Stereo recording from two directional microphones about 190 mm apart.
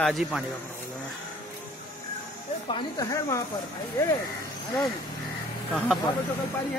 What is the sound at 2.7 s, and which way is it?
Speech, 20° left (ahead or behind).